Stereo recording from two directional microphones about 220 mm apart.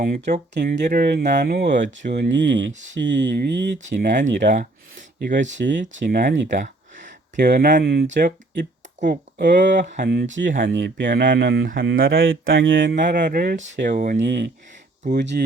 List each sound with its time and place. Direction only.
0.0 s speech: 40° right (ahead or behind)
4.4 s speech: 35° right (ahead or behind)
5.5 s speech: 55° right (ahead or behind)
7.4 s speech: 40° right (ahead or behind)
9.6 s speech: 55° right (ahead or behind)
12.1 s speech: 60° right (ahead or behind); by 14.2 s 35° right (ahead or behind)
14.2 s speech: 50° right (ahead or behind)